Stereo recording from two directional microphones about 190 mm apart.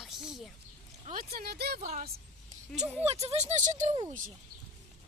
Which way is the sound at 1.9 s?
45° right (ahead or behind).